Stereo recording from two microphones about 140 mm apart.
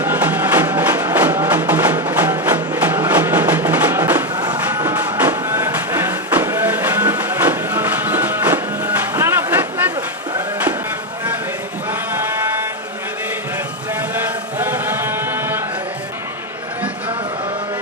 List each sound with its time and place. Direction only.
0.0 s music: 15° right (ahead or behind)
11.9 s sheep: 15° right (ahead or behind)
13.9 s chant: 15° right (ahead or behind)